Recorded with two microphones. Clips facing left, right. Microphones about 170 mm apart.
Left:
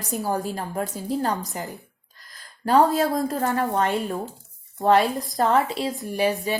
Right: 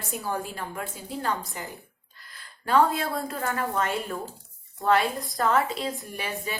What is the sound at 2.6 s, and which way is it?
A woman's voice, 40° left (ahead or behind).